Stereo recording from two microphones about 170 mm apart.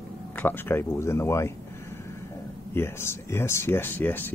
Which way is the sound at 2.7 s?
15° left (ahead or behind).